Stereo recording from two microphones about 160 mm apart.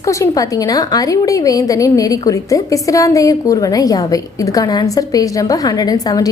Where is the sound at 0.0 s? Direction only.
20° left (ahead or behind).